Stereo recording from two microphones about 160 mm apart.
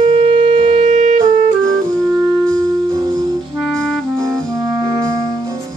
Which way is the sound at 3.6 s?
5° left (ahead or behind).